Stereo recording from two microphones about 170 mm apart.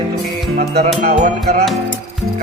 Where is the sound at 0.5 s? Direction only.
55° right (ahead or behind).